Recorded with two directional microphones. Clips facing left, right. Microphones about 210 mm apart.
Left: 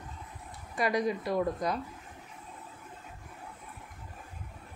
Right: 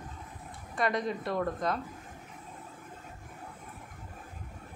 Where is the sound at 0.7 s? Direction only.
Centre (ahead or behind).